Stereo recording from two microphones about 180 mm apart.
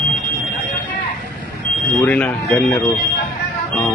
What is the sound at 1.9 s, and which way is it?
Speech, 10° left (ahead or behind).